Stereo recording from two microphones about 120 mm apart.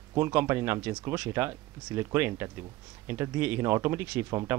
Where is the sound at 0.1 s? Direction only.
20° right (ahead or behind).